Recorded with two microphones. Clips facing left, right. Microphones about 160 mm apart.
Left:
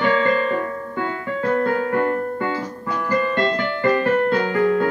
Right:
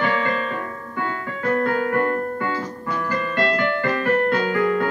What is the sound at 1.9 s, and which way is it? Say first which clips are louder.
Keyboard: left 1 dB; 20° left (ahead or behind).